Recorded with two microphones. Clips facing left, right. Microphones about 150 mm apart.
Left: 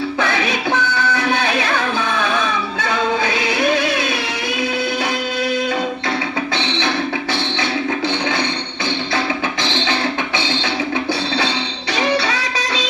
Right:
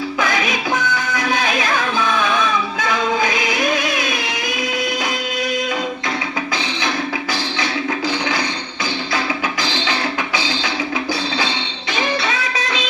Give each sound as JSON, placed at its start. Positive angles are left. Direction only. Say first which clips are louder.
{"t": 0.2, "sound": "music", "louder": "right 1 dB", "side_deg": 30}
{"t": 2.7, "sound": "music", "louder": "even", "side_deg": 30}
{"t": 7.6, "sound": "music", "louder": "left 1 dB", "side_deg": 25}
{"t": 11.9, "sound": "music", "louder": "left 2 dB", "side_deg": 35}